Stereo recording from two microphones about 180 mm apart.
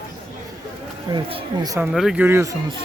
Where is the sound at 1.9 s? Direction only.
5° right (ahead or behind).